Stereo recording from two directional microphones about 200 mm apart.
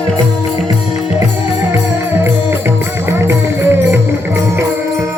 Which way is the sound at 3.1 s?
15° right (ahead or behind).